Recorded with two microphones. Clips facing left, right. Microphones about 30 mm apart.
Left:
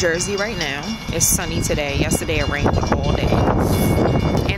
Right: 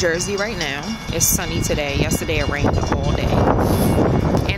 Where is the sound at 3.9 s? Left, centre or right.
Left.